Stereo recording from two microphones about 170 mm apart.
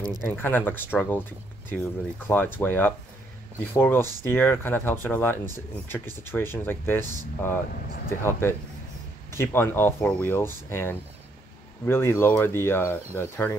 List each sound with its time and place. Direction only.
0.3 s speech: 10° left (ahead or behind)
7.7 s speech: 60° left (ahead or behind)
8.2 s speech: 15° left (ahead or behind)